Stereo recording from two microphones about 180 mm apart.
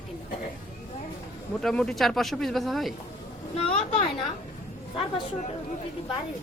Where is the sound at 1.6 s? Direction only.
5° left (ahead or behind).